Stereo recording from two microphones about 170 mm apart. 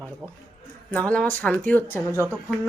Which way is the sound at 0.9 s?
5° left (ahead or behind).